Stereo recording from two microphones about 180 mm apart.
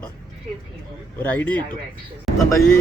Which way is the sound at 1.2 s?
10° left (ahead or behind).